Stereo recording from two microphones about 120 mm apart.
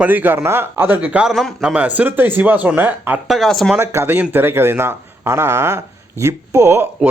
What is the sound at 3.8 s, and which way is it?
Speech, 20° right (ahead or behind).